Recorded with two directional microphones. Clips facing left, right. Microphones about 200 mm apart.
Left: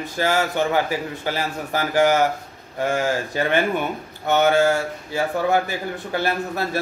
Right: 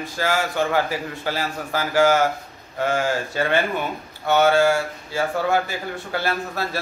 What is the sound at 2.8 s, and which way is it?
Speech, 15° left (ahead or behind).